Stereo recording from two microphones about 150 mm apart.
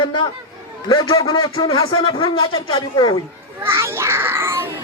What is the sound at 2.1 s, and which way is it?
Speech, 40° left (ahead or behind).